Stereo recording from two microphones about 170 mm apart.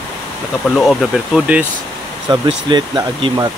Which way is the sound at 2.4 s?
25° right (ahead or behind).